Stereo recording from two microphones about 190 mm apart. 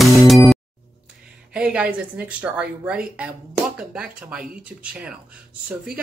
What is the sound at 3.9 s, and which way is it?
Speech, 5° right (ahead or behind).